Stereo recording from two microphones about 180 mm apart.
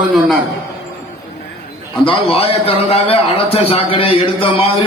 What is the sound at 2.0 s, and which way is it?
A man's voice, 30° left (ahead or behind).